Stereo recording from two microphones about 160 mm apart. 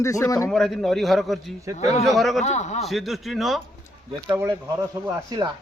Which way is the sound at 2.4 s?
45° left (ahead or behind).